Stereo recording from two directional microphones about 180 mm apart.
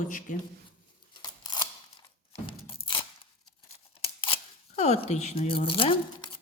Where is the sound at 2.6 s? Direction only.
30° left (ahead or behind).